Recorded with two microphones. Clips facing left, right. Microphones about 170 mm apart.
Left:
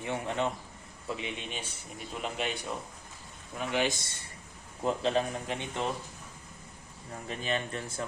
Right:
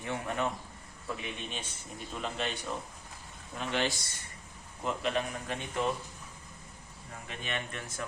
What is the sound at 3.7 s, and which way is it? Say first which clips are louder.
Speech: left 2 dB; 15° left (ahead or behind).